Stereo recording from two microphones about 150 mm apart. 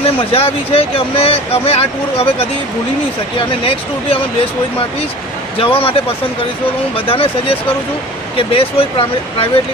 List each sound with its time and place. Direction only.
0.0 s speech: 40° left (ahead or behind)
5.6 s speech: 40° left (ahead or behind)